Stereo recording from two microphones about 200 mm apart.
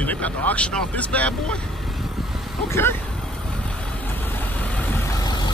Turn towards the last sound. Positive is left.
turn(degrees=20)  # may be behind; listen again after turning